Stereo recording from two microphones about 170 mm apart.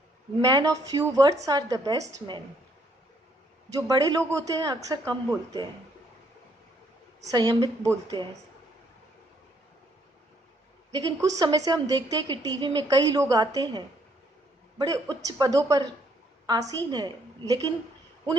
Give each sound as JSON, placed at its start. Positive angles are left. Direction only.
{"t": 0.4, "sound": "a woman's voice", "side_deg": -20}
{"t": 3.7, "sound": "a woman's voice", "side_deg": -20}
{"t": 7.3, "sound": "a woman's voice", "side_deg": -25}
{"t": 10.9, "sound": "a woman's voice", "side_deg": -20}